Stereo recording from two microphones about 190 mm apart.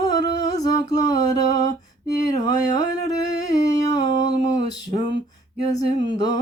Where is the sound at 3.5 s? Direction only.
20° left (ahead or behind).